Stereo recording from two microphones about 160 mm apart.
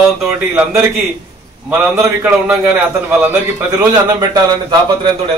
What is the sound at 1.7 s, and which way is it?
A man's voice, 10° right (ahead or behind).